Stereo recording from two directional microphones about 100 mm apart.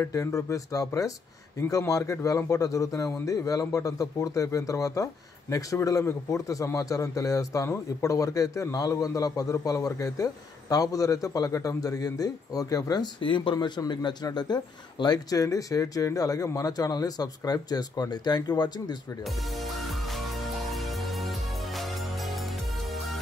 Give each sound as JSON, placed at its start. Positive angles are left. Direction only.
{"t": 0.1, "sound": "a man's voice", "side_deg": 30}
{"t": 13.2, "sound": "a man's voice", "side_deg": 55}
{"t": 19.2, "sound": "music", "side_deg": 0}